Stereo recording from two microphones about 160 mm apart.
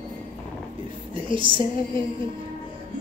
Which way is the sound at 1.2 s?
30° right (ahead or behind).